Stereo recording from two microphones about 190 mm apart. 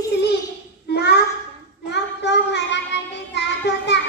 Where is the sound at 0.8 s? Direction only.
60° left (ahead or behind).